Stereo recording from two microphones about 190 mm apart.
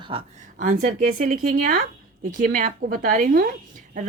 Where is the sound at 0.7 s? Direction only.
45° right (ahead or behind).